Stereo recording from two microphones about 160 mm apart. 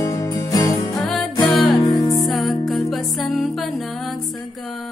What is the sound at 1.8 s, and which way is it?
Music, 25° left (ahead or behind).